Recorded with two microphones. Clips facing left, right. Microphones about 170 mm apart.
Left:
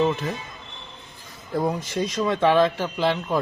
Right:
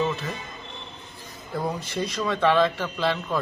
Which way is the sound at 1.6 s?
15° left (ahead or behind).